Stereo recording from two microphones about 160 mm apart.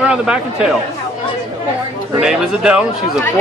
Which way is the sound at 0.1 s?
5° right (ahead or behind).